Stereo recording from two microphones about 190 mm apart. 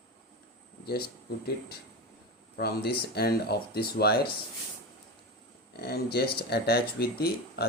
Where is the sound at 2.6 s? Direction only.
55° left (ahead or behind).